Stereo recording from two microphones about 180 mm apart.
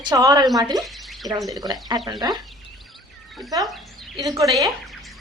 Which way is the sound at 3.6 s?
Centre (ahead or behind).